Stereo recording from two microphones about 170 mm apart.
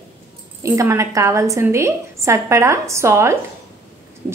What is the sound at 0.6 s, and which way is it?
A woman's voice, 15° right (ahead or behind).